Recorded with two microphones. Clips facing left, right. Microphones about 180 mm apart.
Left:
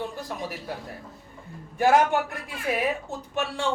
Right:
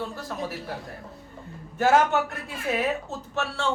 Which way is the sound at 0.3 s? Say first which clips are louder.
Right 3 dB; 15° left (ahead or behind).